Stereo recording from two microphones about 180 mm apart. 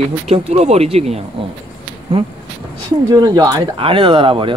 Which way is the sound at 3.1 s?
20° right (ahead or behind).